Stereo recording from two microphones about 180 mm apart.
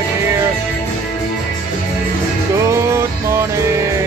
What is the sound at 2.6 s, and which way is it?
Music, 15° right (ahead or behind).